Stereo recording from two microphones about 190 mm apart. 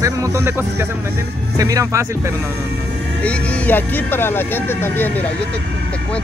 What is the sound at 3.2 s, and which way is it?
Speech, 5° left (ahead or behind).